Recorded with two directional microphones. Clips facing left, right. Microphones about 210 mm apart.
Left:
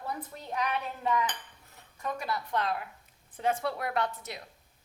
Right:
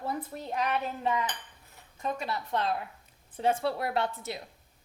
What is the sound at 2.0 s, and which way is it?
A woman's voice, 25° right (ahead or behind).